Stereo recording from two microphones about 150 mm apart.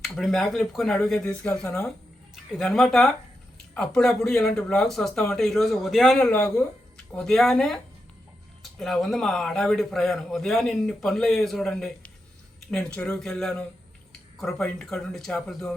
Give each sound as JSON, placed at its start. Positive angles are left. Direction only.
{"t": 0.0, "sound": "a man's voice", "side_deg": 0}
{"t": 1.6, "sound": "speech", "side_deg": 20}
{"t": 2.3, "sound": "a man's voice", "side_deg": 0}